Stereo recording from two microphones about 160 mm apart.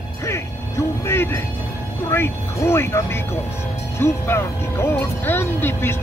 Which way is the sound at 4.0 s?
15° left (ahead or behind).